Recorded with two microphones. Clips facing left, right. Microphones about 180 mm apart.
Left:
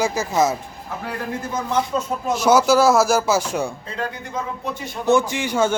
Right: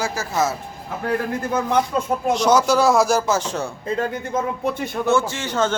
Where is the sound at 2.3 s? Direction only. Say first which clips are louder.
Left 2 dB; 5° left (ahead or behind).